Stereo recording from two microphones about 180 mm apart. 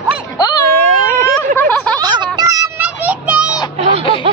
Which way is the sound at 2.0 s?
25° right (ahead or behind).